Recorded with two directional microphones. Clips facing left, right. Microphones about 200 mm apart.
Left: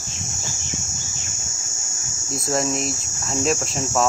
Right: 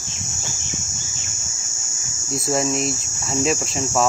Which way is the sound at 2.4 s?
Centre (ahead or behind).